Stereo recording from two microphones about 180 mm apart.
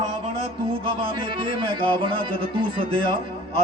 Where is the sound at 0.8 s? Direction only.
30° right (ahead or behind).